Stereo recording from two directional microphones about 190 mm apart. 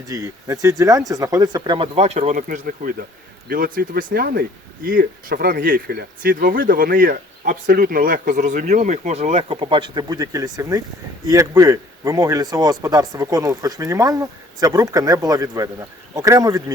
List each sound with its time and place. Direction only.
0.1 s a man's voice: 20° right (ahead or behind)